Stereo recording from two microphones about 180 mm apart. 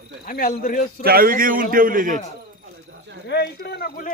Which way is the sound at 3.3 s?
65° left (ahead or behind).